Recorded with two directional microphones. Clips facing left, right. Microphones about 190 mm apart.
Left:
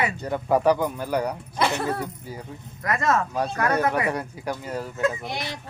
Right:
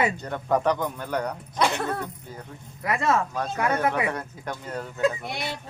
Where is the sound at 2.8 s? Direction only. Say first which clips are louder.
Even; 10° right (ahead or behind).